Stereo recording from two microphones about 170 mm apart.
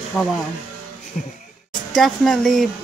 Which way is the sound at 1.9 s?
Centre (ahead or behind).